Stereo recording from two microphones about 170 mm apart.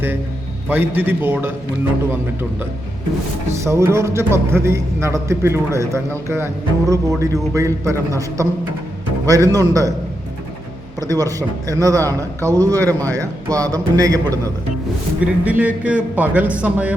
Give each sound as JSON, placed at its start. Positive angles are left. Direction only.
{"t": 0.7, "sound": "a man's voice", "side_deg": -10}
{"t": 3.6, "sound": "a man's voice", "side_deg": -15}
{"t": 11.0, "sound": "a man's voice", "side_deg": -20}
{"t": 15.2, "sound": "a man's voice", "side_deg": -10}